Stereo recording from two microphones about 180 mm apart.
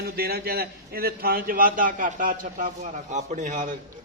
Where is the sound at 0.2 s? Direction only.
60° right (ahead or behind).